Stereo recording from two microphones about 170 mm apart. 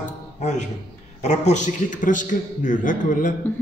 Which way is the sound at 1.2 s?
45° left (ahead or behind).